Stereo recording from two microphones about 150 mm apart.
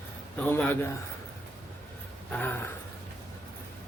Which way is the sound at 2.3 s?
10° left (ahead or behind).